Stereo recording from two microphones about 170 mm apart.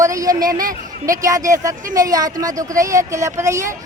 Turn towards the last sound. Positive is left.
turn(degrees=-20)  # may be behind; listen again after turning